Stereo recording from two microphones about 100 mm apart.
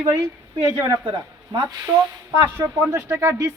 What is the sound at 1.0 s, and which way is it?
Speech, 50° right (ahead or behind).